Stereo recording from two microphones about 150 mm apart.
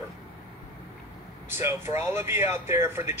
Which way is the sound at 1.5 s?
15° right (ahead or behind).